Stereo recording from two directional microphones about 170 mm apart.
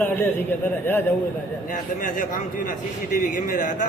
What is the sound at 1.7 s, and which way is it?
Speech, 50° left (ahead or behind).